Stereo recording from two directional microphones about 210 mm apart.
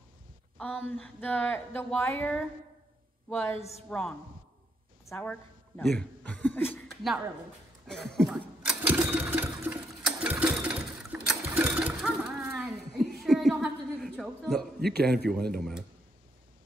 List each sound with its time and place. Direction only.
0.6 s speech: 5° left (ahead or behind)
5.1 s speech: 5° left (ahead or behind)
7.8 s sewing machine: 5° left (ahead or behind)
15.2 s speech: centre (ahead or behind)